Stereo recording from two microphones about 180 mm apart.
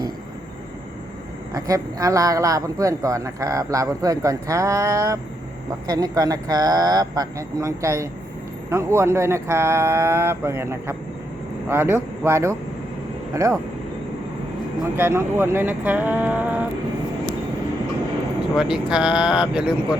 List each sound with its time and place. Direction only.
1.5 s speech: 20° right (ahead or behind)
14.9 s speech: 15° right (ahead or behind)
18.5 s speech: 5° right (ahead or behind)